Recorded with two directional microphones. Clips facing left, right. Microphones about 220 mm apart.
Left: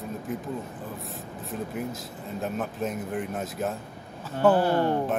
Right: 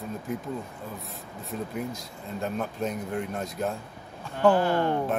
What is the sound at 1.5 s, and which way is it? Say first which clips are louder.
Speech: even; centre (ahead or behind).